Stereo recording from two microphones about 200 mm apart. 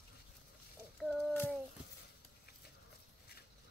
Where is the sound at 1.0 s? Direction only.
Centre (ahead or behind).